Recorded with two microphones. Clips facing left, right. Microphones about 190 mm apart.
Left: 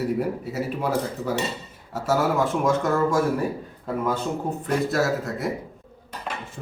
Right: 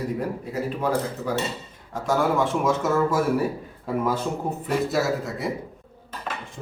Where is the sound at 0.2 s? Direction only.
5° left (ahead or behind).